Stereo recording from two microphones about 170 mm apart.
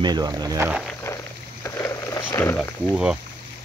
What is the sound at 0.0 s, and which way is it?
Speech, 25° right (ahead or behind).